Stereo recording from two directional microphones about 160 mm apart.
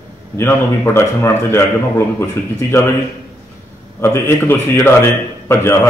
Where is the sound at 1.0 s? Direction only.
15° left (ahead or behind).